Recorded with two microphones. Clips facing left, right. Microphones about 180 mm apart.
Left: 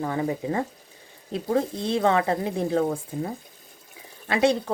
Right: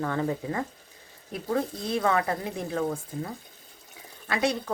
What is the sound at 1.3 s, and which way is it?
Speech, 25° left (ahead or behind).